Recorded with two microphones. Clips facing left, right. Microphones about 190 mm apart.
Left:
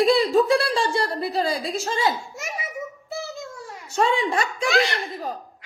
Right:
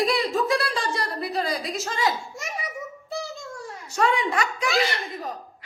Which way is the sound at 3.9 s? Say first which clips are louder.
Left 2 dB; 25° left (ahead or behind).